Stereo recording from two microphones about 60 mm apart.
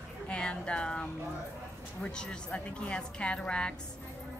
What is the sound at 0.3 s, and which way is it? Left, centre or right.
Music, centre.